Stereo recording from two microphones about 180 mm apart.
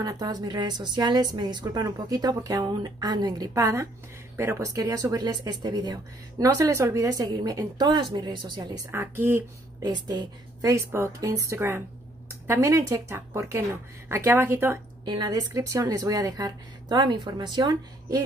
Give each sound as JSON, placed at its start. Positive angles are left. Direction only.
{"t": 0.0, "sound": "a woman's voice", "side_deg": -20}